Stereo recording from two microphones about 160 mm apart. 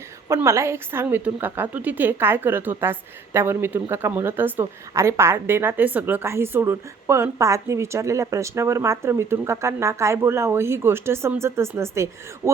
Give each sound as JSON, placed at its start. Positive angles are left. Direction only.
{"t": 0.3, "sound": "a woman's voice", "side_deg": -15}